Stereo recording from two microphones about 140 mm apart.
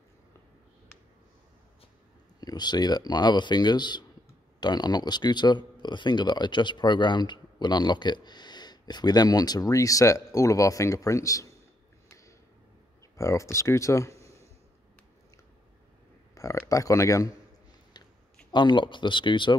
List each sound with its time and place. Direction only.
2.4 s speech: 30° left (ahead or behind)
12.1 s a sound: 20° left (ahead or behind)
13.1 s speech: 20° left (ahead or behind)
16.3 s speech: 25° left (ahead or behind)
17.9 s a sound: 30° left (ahead or behind)
18.5 s speech: 35° left (ahead or behind)